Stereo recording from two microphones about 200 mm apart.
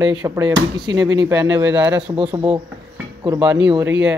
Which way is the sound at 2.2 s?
20° right (ahead or behind).